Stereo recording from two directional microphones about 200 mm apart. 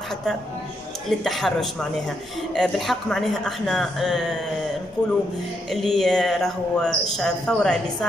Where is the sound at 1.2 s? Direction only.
Centre (ahead or behind).